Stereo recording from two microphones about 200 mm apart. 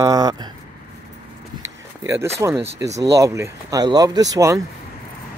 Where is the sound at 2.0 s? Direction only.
15° right (ahead or behind).